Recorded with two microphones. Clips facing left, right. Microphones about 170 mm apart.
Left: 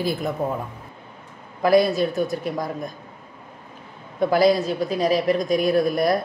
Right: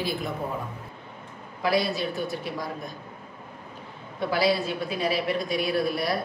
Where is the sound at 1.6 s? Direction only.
50° left (ahead or behind).